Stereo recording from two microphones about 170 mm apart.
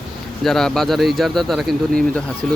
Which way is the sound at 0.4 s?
5° left (ahead or behind).